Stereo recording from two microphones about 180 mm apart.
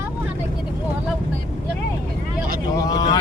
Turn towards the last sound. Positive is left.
turn(degrees=20)  # may be behind; listen again after turning